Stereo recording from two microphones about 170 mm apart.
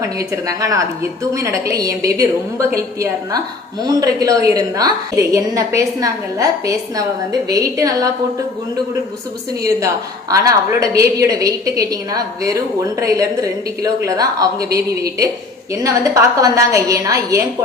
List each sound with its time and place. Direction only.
0.2 s a woman's voice: 20° right (ahead or behind)
9.6 s a woman's voice: 20° right (ahead or behind)